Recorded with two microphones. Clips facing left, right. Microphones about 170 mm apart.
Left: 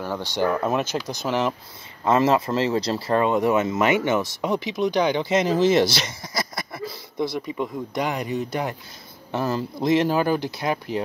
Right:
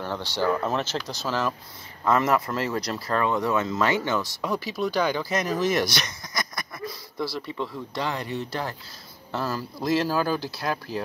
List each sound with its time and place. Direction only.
0.0 s speech: 10° left (ahead or behind)